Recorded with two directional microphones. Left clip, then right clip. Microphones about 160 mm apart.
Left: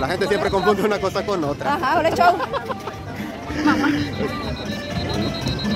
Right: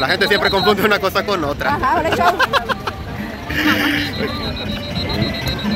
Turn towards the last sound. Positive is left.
turn(degrees=30)  # may be behind; listen again after turning